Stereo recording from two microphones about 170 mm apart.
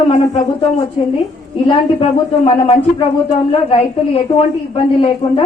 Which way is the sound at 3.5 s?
35° left (ahead or behind).